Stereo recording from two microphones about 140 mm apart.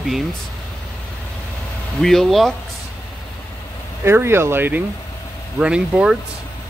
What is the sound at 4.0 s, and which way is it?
Speech, 15° right (ahead or behind).